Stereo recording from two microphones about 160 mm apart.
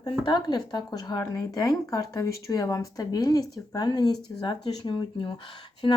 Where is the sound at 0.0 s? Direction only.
25° left (ahead or behind).